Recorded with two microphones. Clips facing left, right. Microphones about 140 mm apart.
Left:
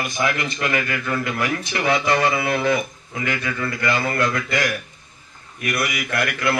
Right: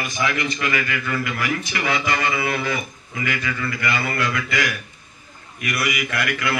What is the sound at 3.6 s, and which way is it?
A man's voice, 45° left (ahead or behind).